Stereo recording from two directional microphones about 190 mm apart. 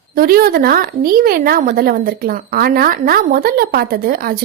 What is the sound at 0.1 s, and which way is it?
A woman's voice, 50° right (ahead or behind).